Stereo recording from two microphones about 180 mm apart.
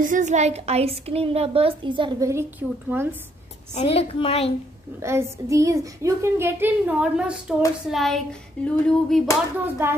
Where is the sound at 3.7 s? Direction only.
35° left (ahead or behind).